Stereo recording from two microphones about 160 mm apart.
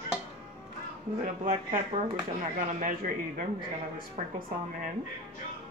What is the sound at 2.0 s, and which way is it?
Speech, 55° right (ahead or behind).